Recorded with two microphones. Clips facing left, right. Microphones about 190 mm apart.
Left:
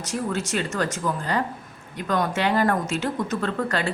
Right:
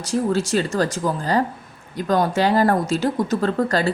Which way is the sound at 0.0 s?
30° right (ahead or behind).